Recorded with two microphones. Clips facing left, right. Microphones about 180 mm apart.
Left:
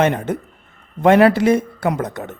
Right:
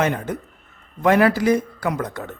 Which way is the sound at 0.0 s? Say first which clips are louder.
Left 4 dB; 25° left (ahead or behind).